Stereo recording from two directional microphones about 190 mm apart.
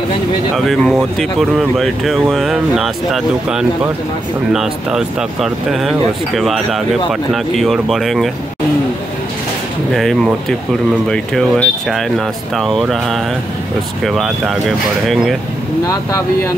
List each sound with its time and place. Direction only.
0.6 s speech: centre (ahead or behind)
9.9 s speech: centre (ahead or behind)
15.9 s speech: 15° left (ahead or behind)